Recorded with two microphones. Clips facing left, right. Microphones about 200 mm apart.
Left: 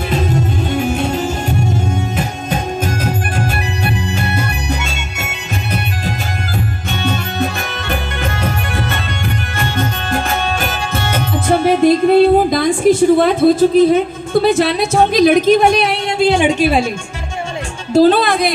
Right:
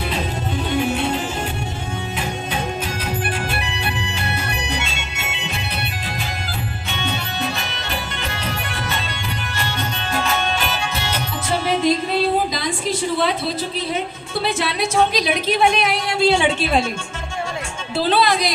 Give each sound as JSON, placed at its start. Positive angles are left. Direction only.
{"t": 0.9, "sound": "music", "side_deg": 45}
{"t": 3.6, "sound": "music", "side_deg": 45}
{"t": 7.0, "sound": "music", "side_deg": 50}
{"t": 9.6, "sound": "music", "side_deg": 50}
{"t": 16.3, "sound": "a woman's voice", "side_deg": 15}
{"t": 17.9, "sound": "speech", "side_deg": 45}